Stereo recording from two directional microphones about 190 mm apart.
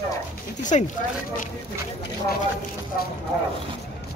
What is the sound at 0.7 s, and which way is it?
Speech, 35° left (ahead or behind).